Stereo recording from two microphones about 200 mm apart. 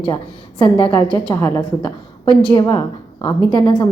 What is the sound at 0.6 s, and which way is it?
A woman's voice, 25° left (ahead or behind).